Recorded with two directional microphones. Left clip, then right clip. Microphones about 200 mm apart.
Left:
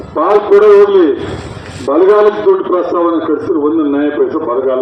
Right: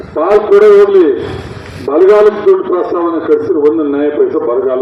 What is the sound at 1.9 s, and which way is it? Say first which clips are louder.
Speech: even; 55° left (ahead or behind).